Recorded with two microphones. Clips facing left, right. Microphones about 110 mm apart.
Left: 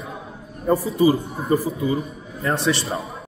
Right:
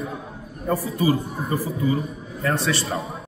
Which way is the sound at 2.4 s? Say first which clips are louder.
Left 2 dB; 20° left (ahead or behind).